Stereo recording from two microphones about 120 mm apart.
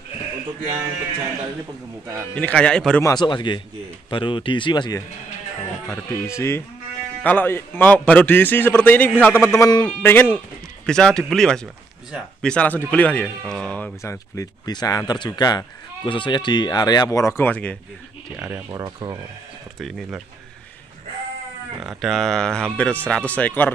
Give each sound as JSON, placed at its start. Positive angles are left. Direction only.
{"t": 2.3, "sound": "speech", "side_deg": 10}
{"t": 3.0, "sound": "speech", "side_deg": 30}
{"t": 3.3, "sound": "speech", "side_deg": 40}
{"t": 5.9, "sound": "speech", "side_deg": 20}
{"t": 10.9, "sound": "speech", "side_deg": 5}
{"t": 14.0, "sound": "speech", "side_deg": 25}
{"t": 18.3, "sound": "speech", "side_deg": -15}
{"t": 18.7, "sound": "speech", "side_deg": -30}
{"t": 19.8, "sound": "speech", "side_deg": 0}
{"t": 21.7, "sound": "speech", "side_deg": 0}